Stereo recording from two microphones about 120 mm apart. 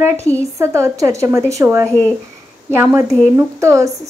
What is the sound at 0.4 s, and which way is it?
A woman's voice, 25° right (ahead or behind).